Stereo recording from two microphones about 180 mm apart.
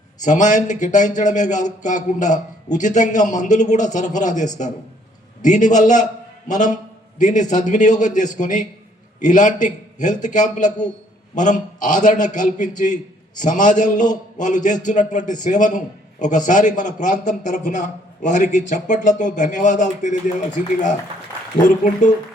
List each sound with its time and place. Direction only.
0.2 s speech: 45° left (ahead or behind)
22.0 s speech: 45° left (ahead or behind)